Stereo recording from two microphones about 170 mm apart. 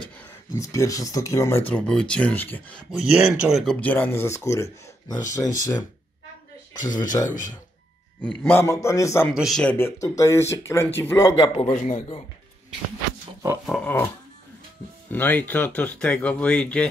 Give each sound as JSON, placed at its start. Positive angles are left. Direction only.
{"t": 0.0, "sound": "speech", "side_deg": 20}
{"t": 3.1, "sound": "speech", "side_deg": -5}
{"t": 3.8, "sound": "speech", "side_deg": 10}
{"t": 8.2, "sound": "speech", "side_deg": 10}
{"t": 9.3, "sound": "speech", "side_deg": 0}
{"t": 11.3, "sound": "a man's voice", "side_deg": 30}
{"t": 13.7, "sound": "speech", "side_deg": 5}
{"t": 15.0, "sound": "speech", "side_deg": 10}